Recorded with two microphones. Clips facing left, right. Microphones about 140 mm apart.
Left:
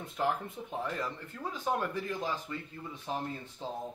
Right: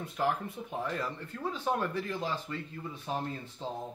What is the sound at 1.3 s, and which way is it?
Speech, 15° left (ahead or behind).